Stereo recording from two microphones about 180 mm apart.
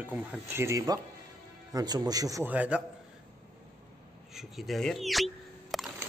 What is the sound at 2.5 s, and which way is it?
Speech, 5° right (ahead or behind).